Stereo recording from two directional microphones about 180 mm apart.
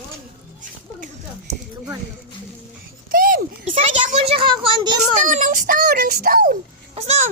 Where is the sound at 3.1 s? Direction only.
55° right (ahead or behind).